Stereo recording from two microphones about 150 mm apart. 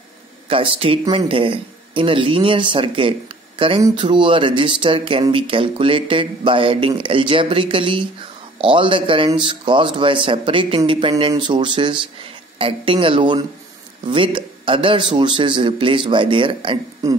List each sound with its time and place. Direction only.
0.5 s speech: 35° right (ahead or behind)